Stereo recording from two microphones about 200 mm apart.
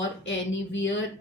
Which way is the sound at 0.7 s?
65° left (ahead or behind).